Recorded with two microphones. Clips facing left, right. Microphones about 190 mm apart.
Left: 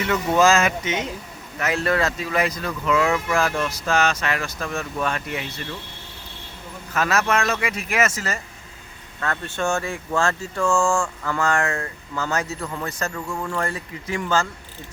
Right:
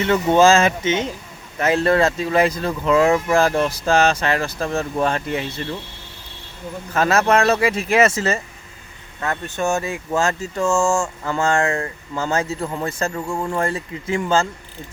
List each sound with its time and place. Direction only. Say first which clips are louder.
0.0 s speech: right 4 dB; 30° right (ahead or behind)
6.9 s speech: right 5 dB; 30° right (ahead or behind)